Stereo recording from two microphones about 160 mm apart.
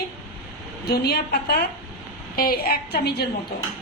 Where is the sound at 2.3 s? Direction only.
65° left (ahead or behind); by 3.3 s 85° left.